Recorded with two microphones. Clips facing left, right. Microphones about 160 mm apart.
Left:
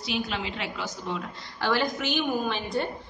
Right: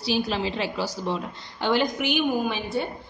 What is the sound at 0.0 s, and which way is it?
A woman's voice, 35° right (ahead or behind).